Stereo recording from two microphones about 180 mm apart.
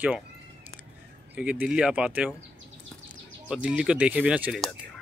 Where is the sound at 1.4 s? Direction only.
5° right (ahead or behind).